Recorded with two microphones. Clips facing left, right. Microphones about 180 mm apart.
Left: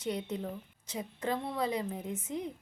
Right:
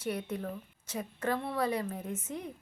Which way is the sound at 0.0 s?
15° left (ahead or behind).